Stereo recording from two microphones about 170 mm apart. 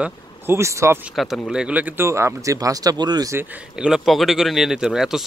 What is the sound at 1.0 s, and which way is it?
Speech, centre (ahead or behind).